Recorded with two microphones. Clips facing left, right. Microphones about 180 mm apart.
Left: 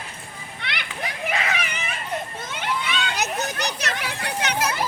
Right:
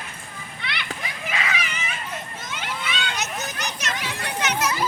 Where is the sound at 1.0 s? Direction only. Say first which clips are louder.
Left 6 dB; 55° left (ahead or behind).